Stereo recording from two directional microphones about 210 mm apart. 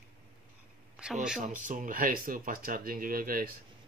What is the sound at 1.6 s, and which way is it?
Speech, 40° right (ahead or behind).